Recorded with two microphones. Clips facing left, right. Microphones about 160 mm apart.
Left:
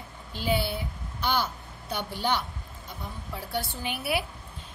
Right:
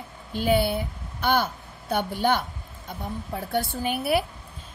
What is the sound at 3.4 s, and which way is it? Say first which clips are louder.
Speech: right 6 dB; 50° right (ahead or behind).